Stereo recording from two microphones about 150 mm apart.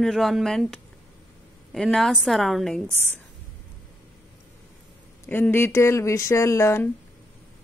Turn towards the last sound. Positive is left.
turn(degrees=20)  # may be behind; listen again after turning